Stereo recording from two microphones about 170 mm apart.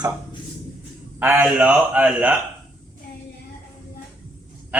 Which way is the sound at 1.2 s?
10° right (ahead or behind).